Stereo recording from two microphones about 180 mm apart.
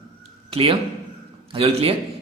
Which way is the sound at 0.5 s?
30° right (ahead or behind).